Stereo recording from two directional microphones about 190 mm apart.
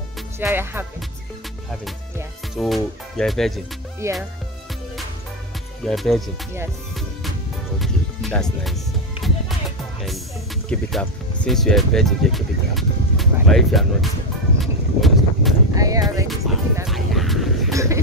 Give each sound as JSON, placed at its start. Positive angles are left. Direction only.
{"t": 0.4, "sound": "music", "side_deg": -10}
{"t": 2.5, "sound": "speech", "side_deg": 0}
{"t": 4.0, "sound": "music", "side_deg": -15}
{"t": 5.9, "sound": "speech", "side_deg": 0}
{"t": 7.8, "sound": "speech", "side_deg": 0}
{"t": 10.7, "sound": "speech", "side_deg": 5}
{"t": 14.6, "sound": "vehicle", "side_deg": 0}
{"t": 15.7, "sound": "speech", "side_deg": -20}
{"t": 16.8, "sound": "a sound", "side_deg": 0}
{"t": 17.7, "sound": "a sound", "side_deg": -15}